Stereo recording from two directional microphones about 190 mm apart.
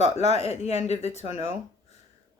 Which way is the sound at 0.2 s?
35° left (ahead or behind).